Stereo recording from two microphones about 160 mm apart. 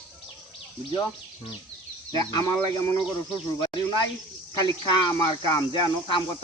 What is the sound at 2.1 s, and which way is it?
Speech, 25° left (ahead or behind).